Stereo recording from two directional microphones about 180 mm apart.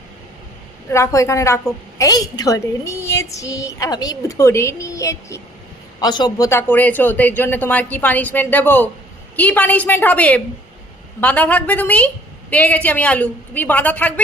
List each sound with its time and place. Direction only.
0.9 s a woman's voice: 15° left (ahead or behind)